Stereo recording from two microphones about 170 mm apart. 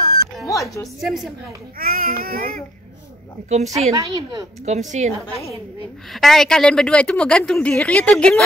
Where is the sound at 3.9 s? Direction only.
20° right (ahead or behind).